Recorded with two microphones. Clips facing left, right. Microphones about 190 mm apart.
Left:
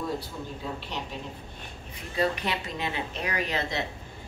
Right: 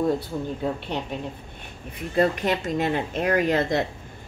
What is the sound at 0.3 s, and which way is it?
Speech, 50° right (ahead or behind).